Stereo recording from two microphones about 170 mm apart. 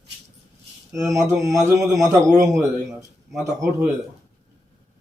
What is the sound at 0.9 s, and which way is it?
A man's voice, 20° right (ahead or behind).